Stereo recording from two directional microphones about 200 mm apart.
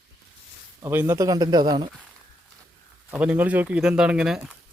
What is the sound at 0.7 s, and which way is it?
Speech, 15° right (ahead or behind).